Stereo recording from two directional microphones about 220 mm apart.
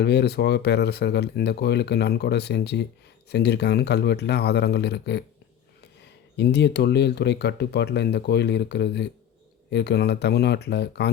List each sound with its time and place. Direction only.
0.0 s speech: 50° left (ahead or behind)
6.3 s speech: 50° left (ahead or behind)